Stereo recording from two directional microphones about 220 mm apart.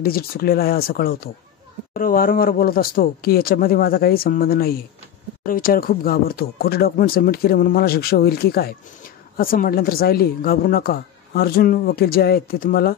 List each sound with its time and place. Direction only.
0.0 s speech: 45° left (ahead or behind)